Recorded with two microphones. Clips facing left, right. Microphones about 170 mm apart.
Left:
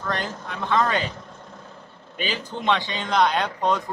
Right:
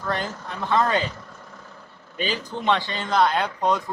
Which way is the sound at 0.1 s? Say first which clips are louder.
Right 1 dB; 10° right (ahead or behind).